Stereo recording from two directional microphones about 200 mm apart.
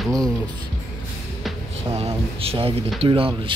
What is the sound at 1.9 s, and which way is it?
Speech, 30° right (ahead or behind).